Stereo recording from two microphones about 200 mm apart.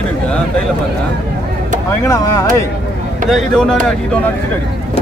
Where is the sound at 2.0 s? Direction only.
15° left (ahead or behind).